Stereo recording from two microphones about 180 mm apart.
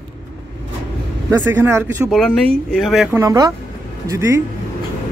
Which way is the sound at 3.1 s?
20° right (ahead or behind).